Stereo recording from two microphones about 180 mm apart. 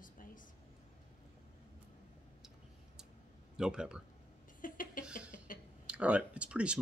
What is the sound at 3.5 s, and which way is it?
Speech, 5° right (ahead or behind).